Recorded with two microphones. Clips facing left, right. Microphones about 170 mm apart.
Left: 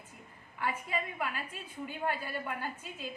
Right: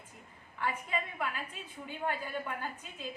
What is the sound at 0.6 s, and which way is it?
A woman's voice, 5° left (ahead or behind).